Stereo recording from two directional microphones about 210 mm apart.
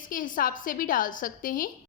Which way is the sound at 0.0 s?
40° left (ahead or behind).